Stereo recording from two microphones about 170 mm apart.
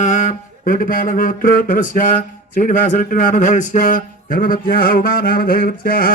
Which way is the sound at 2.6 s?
50° left (ahead or behind).